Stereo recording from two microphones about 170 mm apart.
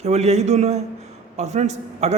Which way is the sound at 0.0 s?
40° right (ahead or behind).